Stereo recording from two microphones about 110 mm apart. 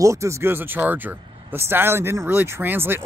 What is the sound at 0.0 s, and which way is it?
Speech, 25° right (ahead or behind).